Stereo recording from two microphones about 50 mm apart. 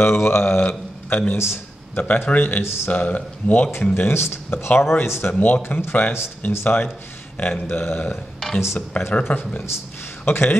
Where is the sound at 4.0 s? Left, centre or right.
Left.